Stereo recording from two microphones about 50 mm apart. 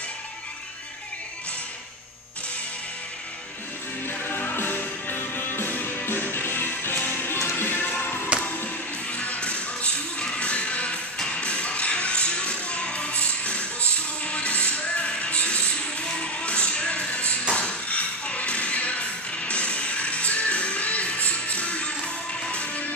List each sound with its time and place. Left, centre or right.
4.0 s music: left
9.1 s music: left